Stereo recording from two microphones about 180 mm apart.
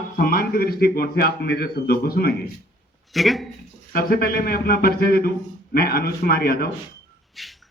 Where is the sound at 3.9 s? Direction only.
60° left (ahead or behind).